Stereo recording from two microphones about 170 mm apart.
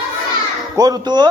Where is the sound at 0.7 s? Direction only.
20° right (ahead or behind).